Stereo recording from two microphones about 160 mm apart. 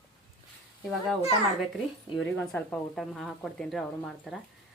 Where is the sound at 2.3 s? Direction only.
5° left (ahead or behind).